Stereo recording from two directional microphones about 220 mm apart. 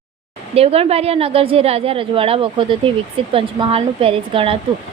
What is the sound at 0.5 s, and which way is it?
A woman's voice, 25° right (ahead or behind).